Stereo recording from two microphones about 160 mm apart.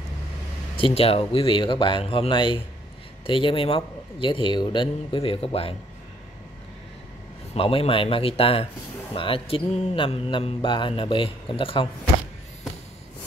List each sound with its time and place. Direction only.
0.7 s speech: 35° left (ahead or behind)
7.5 s speech: 35° left (ahead or behind)